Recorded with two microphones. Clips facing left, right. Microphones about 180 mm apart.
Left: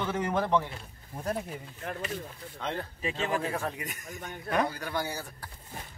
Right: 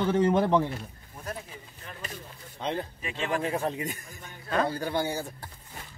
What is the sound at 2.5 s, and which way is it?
Speech, 20° right (ahead or behind).